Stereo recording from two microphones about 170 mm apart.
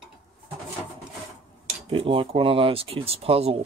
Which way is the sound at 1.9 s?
35° right (ahead or behind).